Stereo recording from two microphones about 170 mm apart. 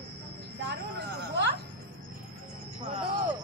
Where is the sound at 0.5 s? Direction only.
80° right.